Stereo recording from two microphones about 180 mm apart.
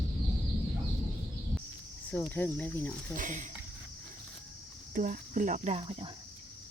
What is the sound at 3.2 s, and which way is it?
Speech, 45° right (ahead or behind).